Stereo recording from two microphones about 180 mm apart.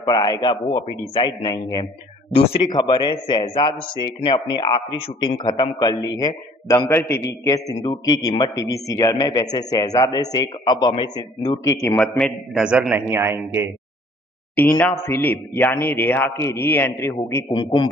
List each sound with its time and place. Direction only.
0.0 s a man's voice: 20° left (ahead or behind)
12.2 s a man's voice: 5° right (ahead or behind)
14.5 s speech: 10° left (ahead or behind)
17.5 s a man's voice: 25° left (ahead or behind)